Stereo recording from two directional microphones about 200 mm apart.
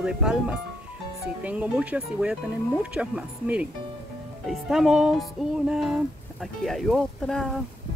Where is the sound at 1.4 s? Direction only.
5° right (ahead or behind).